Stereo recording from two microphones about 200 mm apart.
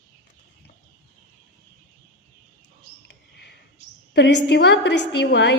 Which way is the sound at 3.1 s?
55° left (ahead or behind).